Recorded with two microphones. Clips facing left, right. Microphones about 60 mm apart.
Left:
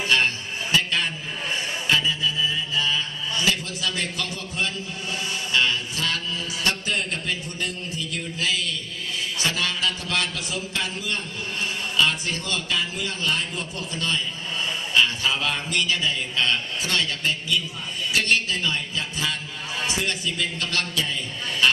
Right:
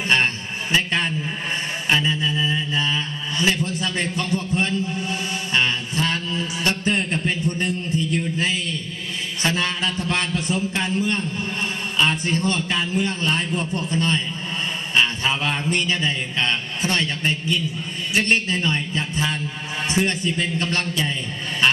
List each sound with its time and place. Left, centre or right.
0.1 s a sound: right
1.9 s mantra: right
9.4 s a man's voice: right